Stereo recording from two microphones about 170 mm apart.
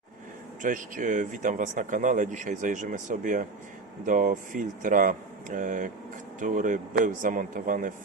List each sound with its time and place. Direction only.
0.6 s speech: 50° right (ahead or behind)